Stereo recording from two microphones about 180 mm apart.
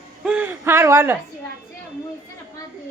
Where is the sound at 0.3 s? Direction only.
10° right (ahead or behind).